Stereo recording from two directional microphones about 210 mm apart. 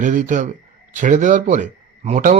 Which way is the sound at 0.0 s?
35° right (ahead or behind).